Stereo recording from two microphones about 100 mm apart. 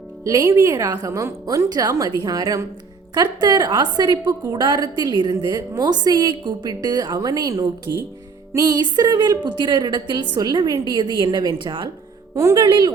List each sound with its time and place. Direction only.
0.3 s a woman's voice: 35° right (ahead or behind); by 11.9 s 55° right (ahead or behind)
12.3 s a woman's voice: 30° right (ahead or behind)
12.6 s a woman's voice: 50° right (ahead or behind)